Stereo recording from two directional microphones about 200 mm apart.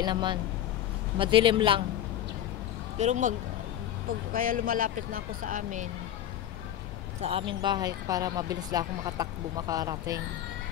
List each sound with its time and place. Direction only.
0.0 s speech: 25° right (ahead or behind)
3.0 s speech: 35° right (ahead or behind)
7.2 s speech: 30° right (ahead or behind)